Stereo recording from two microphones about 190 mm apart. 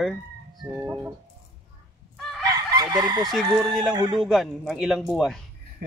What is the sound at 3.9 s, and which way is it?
Speech, 25° right (ahead or behind).